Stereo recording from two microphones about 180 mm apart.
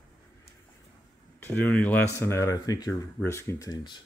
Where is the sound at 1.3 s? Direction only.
10° left (ahead or behind).